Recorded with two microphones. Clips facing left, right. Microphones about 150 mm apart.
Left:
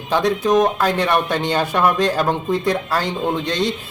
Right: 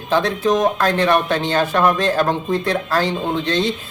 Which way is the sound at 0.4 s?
10° left (ahead or behind).